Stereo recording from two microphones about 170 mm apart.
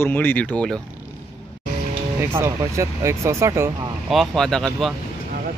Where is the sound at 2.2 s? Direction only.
15° right (ahead or behind).